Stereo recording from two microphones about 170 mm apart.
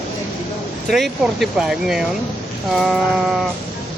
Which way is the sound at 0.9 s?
Centre (ahead or behind).